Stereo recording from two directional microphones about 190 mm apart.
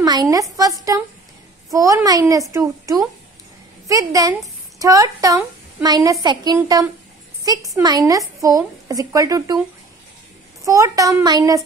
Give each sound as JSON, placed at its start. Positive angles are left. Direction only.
{"t": 0.0, "sound": "a woman's voice", "side_deg": -20}
{"t": 10.6, "sound": "speech", "side_deg": -15}